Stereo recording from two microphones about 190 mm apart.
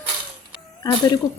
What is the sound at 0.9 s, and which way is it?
Speech, 20° left (ahead or behind).